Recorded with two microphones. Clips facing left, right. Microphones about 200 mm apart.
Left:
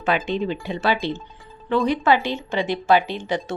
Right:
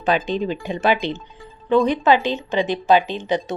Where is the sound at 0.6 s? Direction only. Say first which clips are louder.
Right 3 dB; 15° right (ahead or behind).